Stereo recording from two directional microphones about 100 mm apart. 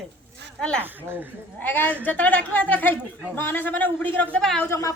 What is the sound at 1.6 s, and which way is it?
A man's voice, 20° left (ahead or behind).